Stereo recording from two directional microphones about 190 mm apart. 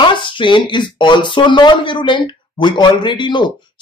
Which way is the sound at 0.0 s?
25° left (ahead or behind).